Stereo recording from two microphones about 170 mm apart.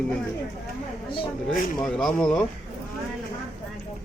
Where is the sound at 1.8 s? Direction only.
5° left (ahead or behind).